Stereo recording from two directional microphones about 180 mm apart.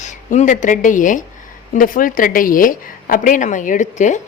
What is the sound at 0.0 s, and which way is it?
A woman's voice, 40° left (ahead or behind).